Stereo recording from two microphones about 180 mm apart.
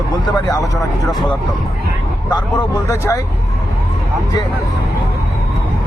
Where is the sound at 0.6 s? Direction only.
Centre (ahead or behind).